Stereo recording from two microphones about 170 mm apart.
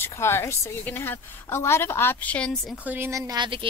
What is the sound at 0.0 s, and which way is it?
A woman's voice, 15° left (ahead or behind).